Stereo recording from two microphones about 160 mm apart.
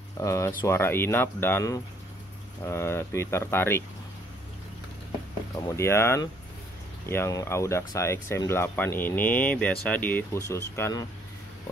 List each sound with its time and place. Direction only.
0.2 s speech: 20° left (ahead or behind)
5.5 s speech: 15° left (ahead or behind)